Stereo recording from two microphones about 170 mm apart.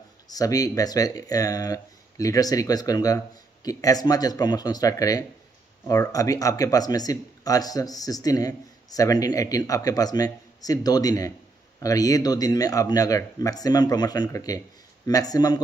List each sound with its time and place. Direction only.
0.3 s speech: 20° left (ahead or behind)